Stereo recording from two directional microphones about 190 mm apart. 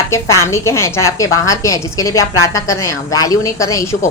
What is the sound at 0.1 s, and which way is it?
A woman's voice, 15° left (ahead or behind).